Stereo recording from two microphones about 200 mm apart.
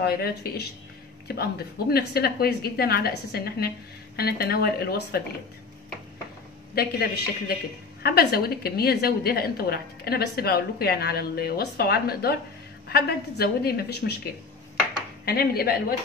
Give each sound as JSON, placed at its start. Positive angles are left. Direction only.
{"t": 0.0, "sound": "a woman's voice", "side_deg": 50}
{"t": 6.7, "sound": "a woman's voice", "side_deg": 50}
{"t": 15.2, "sound": "a woman's voice", "side_deg": 50}